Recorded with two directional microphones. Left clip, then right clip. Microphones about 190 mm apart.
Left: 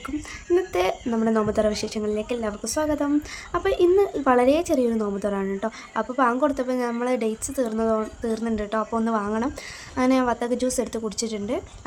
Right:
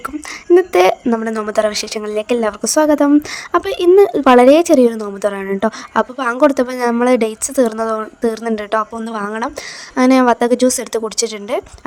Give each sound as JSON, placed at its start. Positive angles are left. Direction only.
{"t": 0.5, "sound": "a woman's voice", "side_deg": -50}